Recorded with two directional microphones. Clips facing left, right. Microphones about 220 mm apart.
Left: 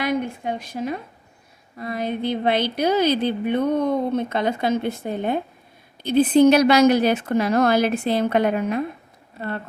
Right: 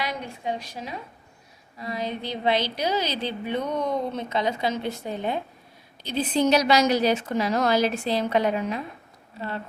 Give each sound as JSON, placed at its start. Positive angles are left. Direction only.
{"t": 0.0, "sound": "a woman's voice", "side_deg": 50}